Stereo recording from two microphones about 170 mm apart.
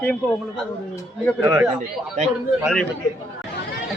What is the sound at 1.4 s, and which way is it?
Speech, 10° right (ahead or behind).